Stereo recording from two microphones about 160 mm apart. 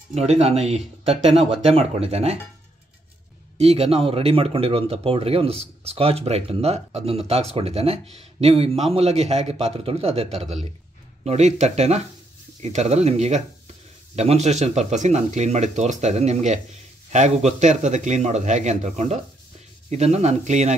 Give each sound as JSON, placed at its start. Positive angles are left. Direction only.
{"t": 0.1, "sound": "speech", "side_deg": -40}
{"t": 3.5, "sound": "speech", "side_deg": -40}